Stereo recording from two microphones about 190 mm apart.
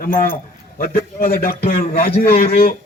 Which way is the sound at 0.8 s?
50° left (ahead or behind).